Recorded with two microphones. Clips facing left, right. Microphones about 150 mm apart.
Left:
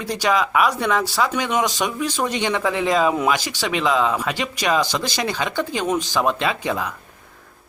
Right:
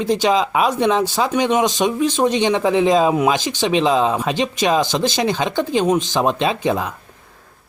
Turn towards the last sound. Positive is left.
turn(degrees=-20)  # may be behind; listen again after turning